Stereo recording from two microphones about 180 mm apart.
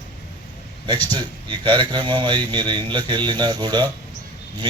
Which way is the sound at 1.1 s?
25° right (ahead or behind).